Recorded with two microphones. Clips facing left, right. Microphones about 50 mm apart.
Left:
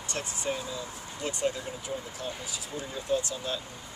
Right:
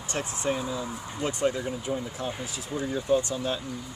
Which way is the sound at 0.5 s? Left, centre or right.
Centre.